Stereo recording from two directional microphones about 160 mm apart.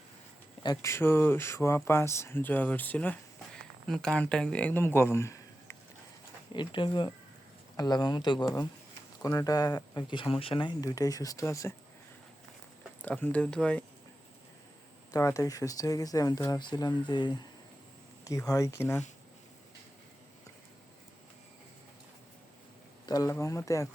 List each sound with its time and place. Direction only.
0.6 s speech: 20° left (ahead or behind)
6.5 s speech: 30° left (ahead or behind)
13.0 s speech: 10° left (ahead or behind)
15.1 s speech: 20° left (ahead or behind)
23.0 s speech: 20° left (ahead or behind)